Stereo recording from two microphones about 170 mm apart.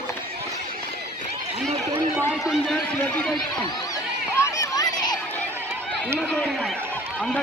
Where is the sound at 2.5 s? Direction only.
5° left (ahead or behind).